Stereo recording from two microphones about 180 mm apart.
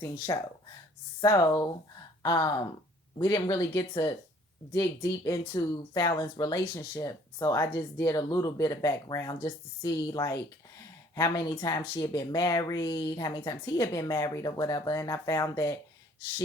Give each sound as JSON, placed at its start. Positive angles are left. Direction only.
{"t": 0.0, "sound": "speech", "side_deg": 15}